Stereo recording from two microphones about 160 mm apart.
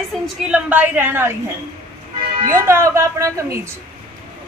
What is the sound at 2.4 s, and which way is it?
A woman's voice, 15° right (ahead or behind).